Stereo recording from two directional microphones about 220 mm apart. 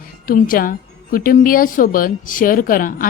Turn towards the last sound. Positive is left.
turn(degrees=40)  # may be behind; listen again after turning